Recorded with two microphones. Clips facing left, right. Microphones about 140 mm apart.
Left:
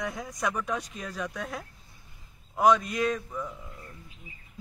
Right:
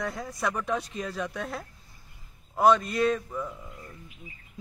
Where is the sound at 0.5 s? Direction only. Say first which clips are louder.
Right 2 dB; 5° right (ahead or behind).